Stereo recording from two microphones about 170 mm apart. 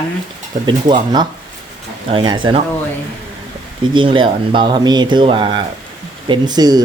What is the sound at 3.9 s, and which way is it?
Speech, 30° right (ahead or behind).